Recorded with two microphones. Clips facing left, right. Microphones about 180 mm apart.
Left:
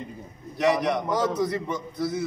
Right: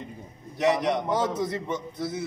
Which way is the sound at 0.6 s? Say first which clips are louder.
Left 1 dB; 20° right (ahead or behind).